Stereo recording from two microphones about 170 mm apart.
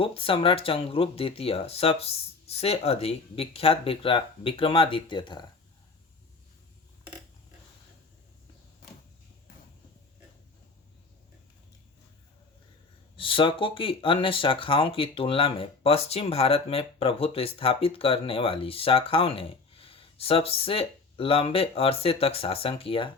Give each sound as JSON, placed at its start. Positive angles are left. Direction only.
{"t": 0.0, "sound": "speech", "side_deg": 30}
{"t": 13.1, "sound": "speech", "side_deg": 30}